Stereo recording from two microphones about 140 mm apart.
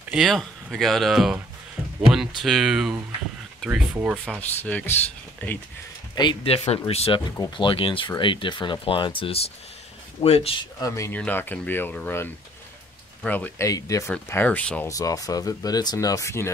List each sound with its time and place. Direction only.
0.1 s speech: centre (ahead or behind)
4.6 s speech: 10° left (ahead or behind)
6.1 s speech: 35° left (ahead or behind)
7.3 s speech: 35° left (ahead or behind)
10.8 s speech: 20° left (ahead or behind)
13.7 s speech: 25° left (ahead or behind)
14.1 s speech: 10° left (ahead or behind)
14.9 s speech: 25° left (ahead or behind)